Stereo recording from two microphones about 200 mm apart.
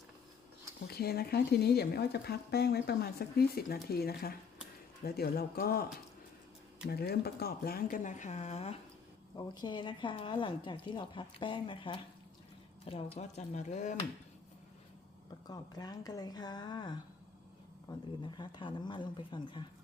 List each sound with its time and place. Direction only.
0.9 s speech: 50° left (ahead or behind)
6.8 s speech: 50° left (ahead or behind); by 8.8 s 35° left (ahead or behind)
9.3 s speech: 20° left (ahead or behind); by 13.9 s 35° left (ahead or behind)
15.4 s speech: 20° left (ahead or behind)